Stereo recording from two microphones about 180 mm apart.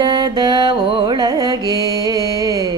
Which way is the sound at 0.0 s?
25° right (ahead or behind).